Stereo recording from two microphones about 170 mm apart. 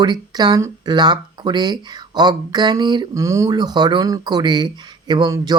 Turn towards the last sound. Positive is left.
turn(degrees=-25)  # may be behind; listen again after turning